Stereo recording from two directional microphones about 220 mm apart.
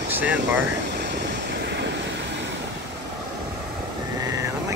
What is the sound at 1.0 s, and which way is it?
Vehicle, 50° right (ahead or behind).